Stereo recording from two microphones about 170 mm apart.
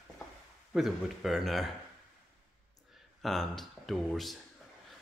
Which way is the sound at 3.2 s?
Centre (ahead or behind).